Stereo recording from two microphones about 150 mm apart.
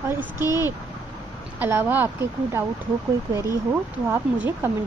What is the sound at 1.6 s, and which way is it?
Speech, 15° right (ahead or behind).